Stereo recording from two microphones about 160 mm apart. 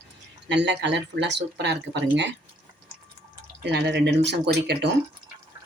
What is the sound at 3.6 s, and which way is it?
A woman's voice, 90° right.